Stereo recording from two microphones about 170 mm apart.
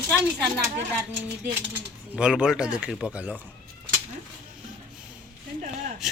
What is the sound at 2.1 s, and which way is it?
Speech, 5° right (ahead or behind).